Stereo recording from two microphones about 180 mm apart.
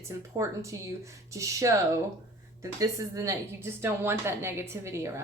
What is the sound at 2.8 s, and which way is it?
Speech, 20° right (ahead or behind).